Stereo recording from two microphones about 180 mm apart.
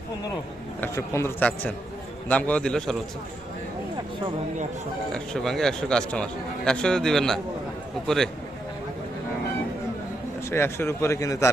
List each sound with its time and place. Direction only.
0.8 s a man's voice: 15° left (ahead or behind)
5.1 s speech: 5° left (ahead or behind)
10.5 s a man's voice: 15° left (ahead or behind)